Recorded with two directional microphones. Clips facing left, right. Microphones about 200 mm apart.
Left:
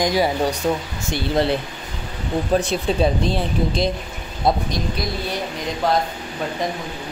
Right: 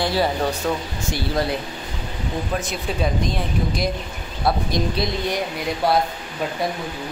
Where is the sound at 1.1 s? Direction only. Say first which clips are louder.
Left 4 dB; 25° left (ahead or behind).